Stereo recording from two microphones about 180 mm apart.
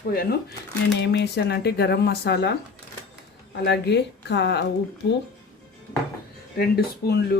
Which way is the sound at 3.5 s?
70° left (ahead or behind).